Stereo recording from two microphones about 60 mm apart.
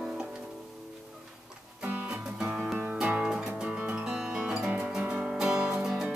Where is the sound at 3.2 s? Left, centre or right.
Centre.